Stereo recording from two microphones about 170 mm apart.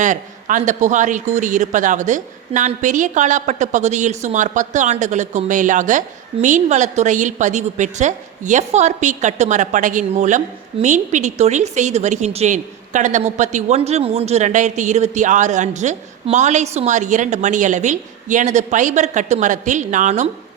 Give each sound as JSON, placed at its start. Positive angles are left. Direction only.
{"t": 0.0, "sound": "a man's voice", "side_deg": -50}